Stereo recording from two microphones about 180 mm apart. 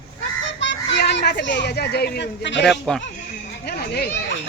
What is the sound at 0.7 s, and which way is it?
A child's voice, 75° left (ahead or behind).